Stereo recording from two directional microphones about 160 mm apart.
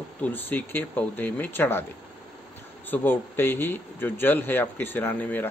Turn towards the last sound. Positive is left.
turn(degrees=10)  # may be behind; listen again after turning